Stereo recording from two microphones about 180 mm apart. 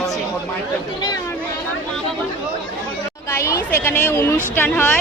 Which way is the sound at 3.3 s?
15° left (ahead or behind).